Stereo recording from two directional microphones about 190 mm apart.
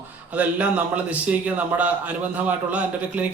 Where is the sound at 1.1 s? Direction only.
5° right (ahead or behind).